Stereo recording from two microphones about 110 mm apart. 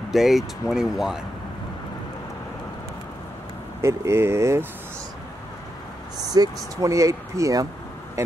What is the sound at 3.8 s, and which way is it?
Speech, 25° right (ahead or behind).